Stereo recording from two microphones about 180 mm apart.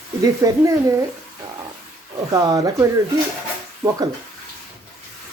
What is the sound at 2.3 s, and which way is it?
Speech, 20° right (ahead or behind).